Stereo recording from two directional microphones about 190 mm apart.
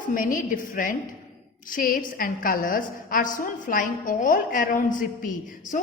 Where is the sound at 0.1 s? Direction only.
45° left (ahead or behind).